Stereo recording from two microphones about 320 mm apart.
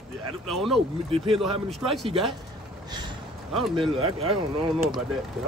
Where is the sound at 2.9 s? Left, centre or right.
Centre.